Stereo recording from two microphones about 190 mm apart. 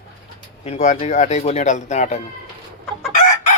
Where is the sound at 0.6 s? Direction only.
35° left (ahead or behind).